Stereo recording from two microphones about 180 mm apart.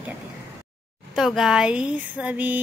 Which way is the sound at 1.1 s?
Centre (ahead or behind).